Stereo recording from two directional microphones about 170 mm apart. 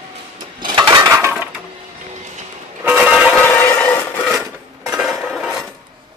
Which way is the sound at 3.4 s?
10° left (ahead or behind).